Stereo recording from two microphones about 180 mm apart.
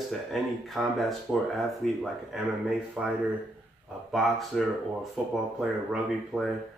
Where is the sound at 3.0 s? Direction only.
5° right (ahead or behind).